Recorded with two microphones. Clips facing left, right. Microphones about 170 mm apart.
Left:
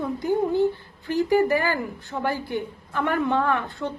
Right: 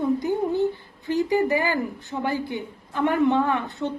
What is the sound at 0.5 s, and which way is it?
Speech, 15° right (ahead or behind).